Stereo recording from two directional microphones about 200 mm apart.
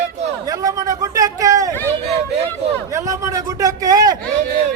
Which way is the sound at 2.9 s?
15° right (ahead or behind).